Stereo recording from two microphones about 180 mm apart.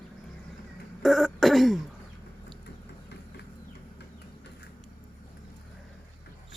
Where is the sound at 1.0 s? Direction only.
Centre (ahead or behind).